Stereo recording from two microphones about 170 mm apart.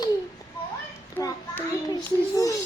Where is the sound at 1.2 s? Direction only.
20° left (ahead or behind).